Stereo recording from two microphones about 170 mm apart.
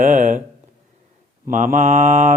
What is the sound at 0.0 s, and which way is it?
Mantra, 50° right (ahead or behind).